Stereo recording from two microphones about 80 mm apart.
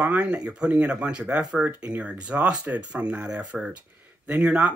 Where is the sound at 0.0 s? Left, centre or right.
Centre.